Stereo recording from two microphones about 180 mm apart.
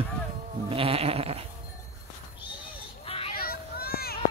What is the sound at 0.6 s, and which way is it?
Goat, 30° right (ahead or behind).